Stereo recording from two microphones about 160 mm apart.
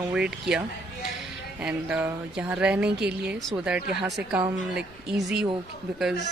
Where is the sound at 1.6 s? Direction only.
5° right (ahead or behind).